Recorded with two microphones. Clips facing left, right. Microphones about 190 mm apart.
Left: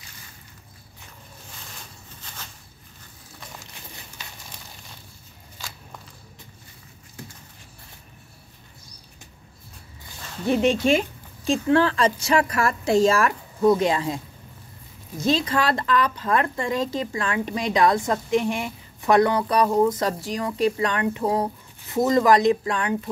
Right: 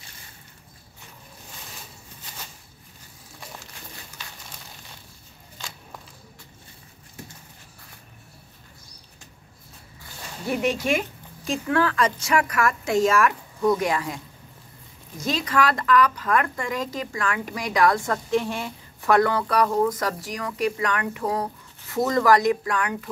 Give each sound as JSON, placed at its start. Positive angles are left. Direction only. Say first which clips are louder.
{"t": 10.4, "sound": "a woman's voice", "louder": "left 5 dB", "side_deg": 25}